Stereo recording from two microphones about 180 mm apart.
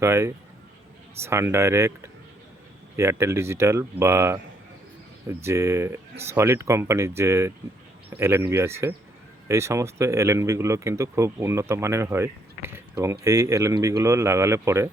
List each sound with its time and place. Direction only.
0.0 s speech: 15° right (ahead or behind)
2.9 s speech: 15° right (ahead or behind)